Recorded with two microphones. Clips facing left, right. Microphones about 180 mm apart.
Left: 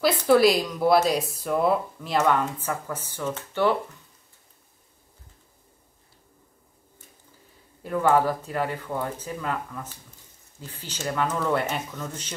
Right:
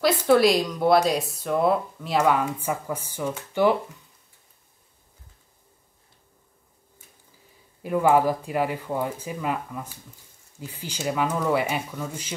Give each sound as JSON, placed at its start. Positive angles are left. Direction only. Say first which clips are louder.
{"t": 0.0, "sound": "speech", "louder": "even", "side_deg": 0}
{"t": 7.8, "sound": "speech", "louder": "right 2 dB", "side_deg": -10}